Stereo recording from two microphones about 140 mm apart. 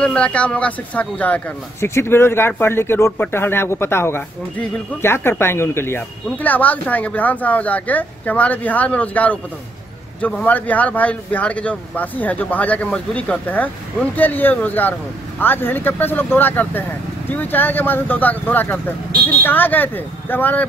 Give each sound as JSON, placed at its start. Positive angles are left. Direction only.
{"t": 0.0, "sound": "speech", "side_deg": 10}